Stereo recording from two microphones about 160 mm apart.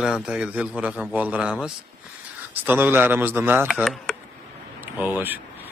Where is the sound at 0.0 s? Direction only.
5° right (ahead or behind).